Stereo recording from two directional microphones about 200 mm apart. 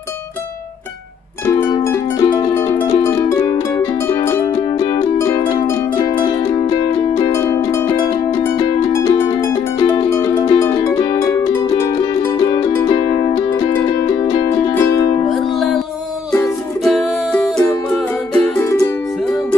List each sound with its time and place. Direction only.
1.4 s music: 15° left (ahead or behind)
4.7 s music: 25° left (ahead or behind)
5.2 s music: 15° left (ahead or behind)
6.5 s music: 30° left (ahead or behind)
7.3 s music: 15° left (ahead or behind)
12.5 s music: 20° left (ahead or behind)
14.7 s music: 10° left (ahead or behind)
16.8 s music: centre (ahead or behind)